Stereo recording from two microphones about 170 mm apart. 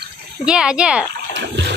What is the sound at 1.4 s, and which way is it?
Water, 90° right.